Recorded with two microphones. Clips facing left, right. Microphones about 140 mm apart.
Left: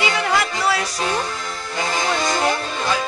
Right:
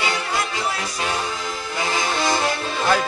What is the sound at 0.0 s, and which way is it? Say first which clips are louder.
Music: left 4 dB; 90° left.